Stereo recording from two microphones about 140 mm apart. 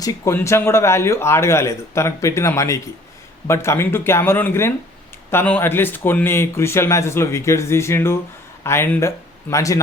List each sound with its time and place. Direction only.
0.0 s speech: 25° left (ahead or behind)